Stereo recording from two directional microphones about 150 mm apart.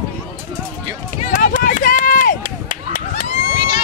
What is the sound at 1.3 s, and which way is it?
Run, 65° left (ahead or behind).